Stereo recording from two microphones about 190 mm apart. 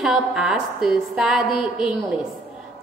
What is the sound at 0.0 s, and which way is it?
A woman's voice, 5° right (ahead or behind).